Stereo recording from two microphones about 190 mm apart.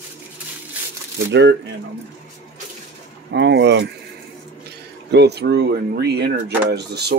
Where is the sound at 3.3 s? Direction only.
65° right (ahead or behind).